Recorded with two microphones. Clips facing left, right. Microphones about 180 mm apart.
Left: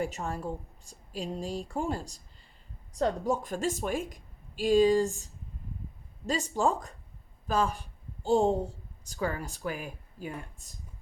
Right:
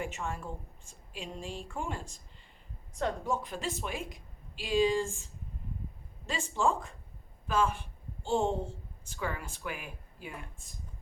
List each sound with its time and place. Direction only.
0.0 s a woman's voice: 40° left (ahead or behind)